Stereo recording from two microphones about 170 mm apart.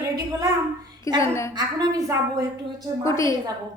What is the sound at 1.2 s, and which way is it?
Speech, 15° left (ahead or behind).